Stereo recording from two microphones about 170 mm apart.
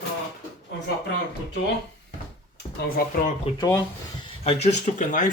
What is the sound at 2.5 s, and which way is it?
Speech, 75° left (ahead or behind).